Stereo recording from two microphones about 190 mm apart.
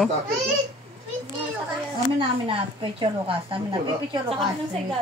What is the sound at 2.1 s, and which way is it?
A woman's voice, 30° right (ahead or behind).